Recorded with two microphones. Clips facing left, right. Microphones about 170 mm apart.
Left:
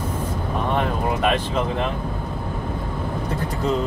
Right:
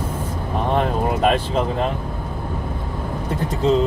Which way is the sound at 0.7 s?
40° right (ahead or behind).